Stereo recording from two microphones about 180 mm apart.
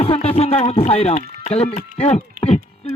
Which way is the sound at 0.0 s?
35° left (ahead or behind).